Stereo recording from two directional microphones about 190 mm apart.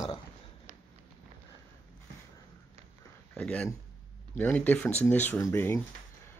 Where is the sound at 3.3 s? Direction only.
5° left (ahead or behind).